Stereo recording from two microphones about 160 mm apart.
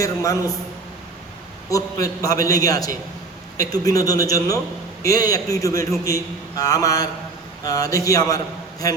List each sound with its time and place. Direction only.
0.0 s a man's voice: 20° left (ahead or behind)
1.7 s a man's voice: 20° left (ahead or behind)